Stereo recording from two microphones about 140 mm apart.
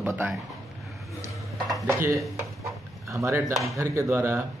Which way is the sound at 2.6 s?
20° right (ahead or behind).